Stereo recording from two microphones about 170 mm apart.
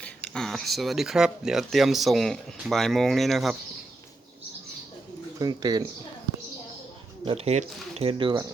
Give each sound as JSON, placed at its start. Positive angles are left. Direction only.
{"t": 0.0, "sound": "speech", "side_deg": 5}
{"t": 5.4, "sound": "speech", "side_deg": -25}
{"t": 7.3, "sound": "speech", "side_deg": -35}